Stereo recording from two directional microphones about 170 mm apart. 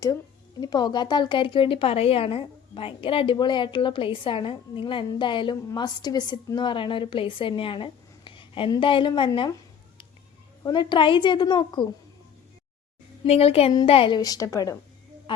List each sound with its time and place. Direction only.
0.6 s speech: 25° left (ahead or behind)
10.6 s speech: 25° left (ahead or behind)
13.2 s speech: 35° left (ahead or behind); by 14.8 s 20° left (ahead or behind)